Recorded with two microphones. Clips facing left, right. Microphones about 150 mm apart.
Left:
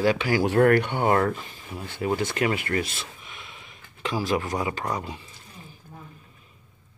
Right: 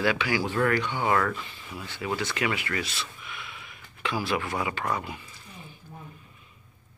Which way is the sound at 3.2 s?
35° left (ahead or behind).